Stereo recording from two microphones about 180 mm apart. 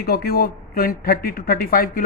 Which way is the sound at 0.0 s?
60° left (ahead or behind).